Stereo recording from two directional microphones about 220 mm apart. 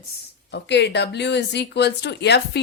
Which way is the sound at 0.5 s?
50° left (ahead or behind).